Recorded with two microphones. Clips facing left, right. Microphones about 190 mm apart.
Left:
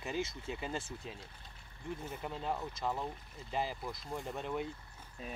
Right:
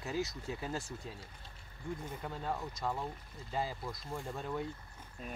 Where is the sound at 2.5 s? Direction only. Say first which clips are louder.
Left 1 dB; centre (ahead or behind).